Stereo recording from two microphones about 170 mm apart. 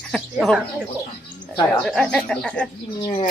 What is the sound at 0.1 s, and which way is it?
Speech, 5° left (ahead or behind).